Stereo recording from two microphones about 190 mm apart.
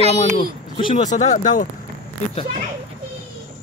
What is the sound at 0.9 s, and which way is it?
Speech, 40° left (ahead or behind).